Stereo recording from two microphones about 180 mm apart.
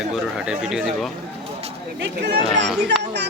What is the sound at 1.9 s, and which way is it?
Speech, 70° right (ahead or behind).